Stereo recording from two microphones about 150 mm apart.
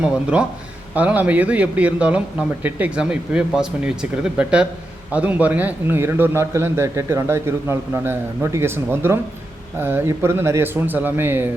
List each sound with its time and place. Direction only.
0.0 s a man's voice: 5° right (ahead or behind)